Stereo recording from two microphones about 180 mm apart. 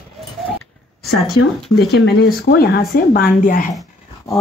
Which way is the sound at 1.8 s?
65° left (ahead or behind).